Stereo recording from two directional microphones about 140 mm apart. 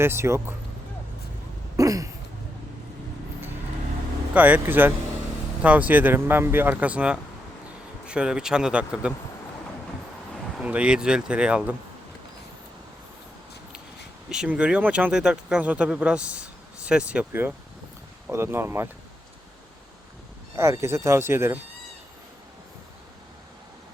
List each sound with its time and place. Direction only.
0.0 s speech: 15° right (ahead or behind)
1.7 s a sound: 25° right (ahead or behind)
4.4 s speech: 10° right (ahead or behind)
10.6 s speech: 10° right (ahead or behind)
14.3 s speech: 5° right (ahead or behind)
20.6 s speech: 20° right (ahead or behind)